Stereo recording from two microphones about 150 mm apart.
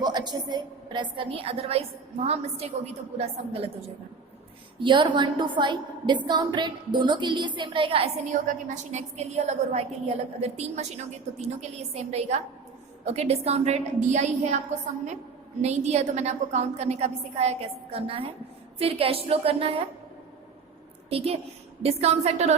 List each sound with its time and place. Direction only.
0.0 s a woman's voice: 30° right (ahead or behind)
8.3 s a woman's voice: 55° right (ahead or behind)
15.6 s a woman's voice: 45° right (ahead or behind)
21.1 s a woman's voice: 40° right (ahead or behind)